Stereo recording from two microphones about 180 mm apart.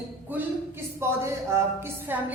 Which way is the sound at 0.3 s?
10° right (ahead or behind).